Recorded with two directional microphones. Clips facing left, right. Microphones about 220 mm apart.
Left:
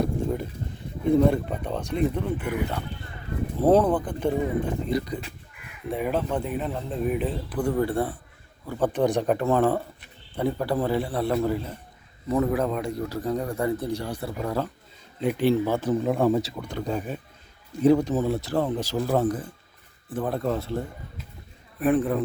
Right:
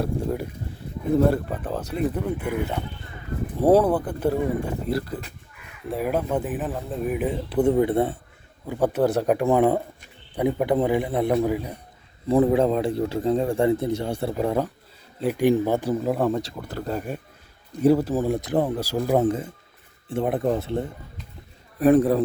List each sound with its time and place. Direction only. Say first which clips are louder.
0.0 s a sound: even; 5° right (ahead or behind)
1.1 s speech: right 1 dB; 5° right (ahead or behind)
7.5 s speech: right 6 dB; 20° right (ahead or behind)
8.6 s speech: right 2 dB; 15° right (ahead or behind)
12.3 s speech: right 5 dB; 30° right (ahead or behind)
15.2 s speech: right 1 dB; 5° right (ahead or behind)
15.4 s speech: right 2 dB; 15° right (ahead or behind)
19.2 s speech: right 3 dB; 25° right (ahead or behind)
21.8 s a man's voice: right 5 dB; 40° right (ahead or behind)